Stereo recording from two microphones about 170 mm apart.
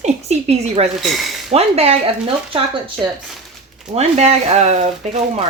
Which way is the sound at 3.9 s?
40° right (ahead or behind).